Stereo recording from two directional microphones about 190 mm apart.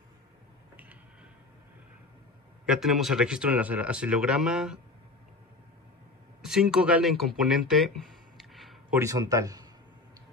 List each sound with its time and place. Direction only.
2.6 s speech: 5° right (ahead or behind)
6.4 s speech: 5° right (ahead or behind)
9.0 s speech: 20° right (ahead or behind)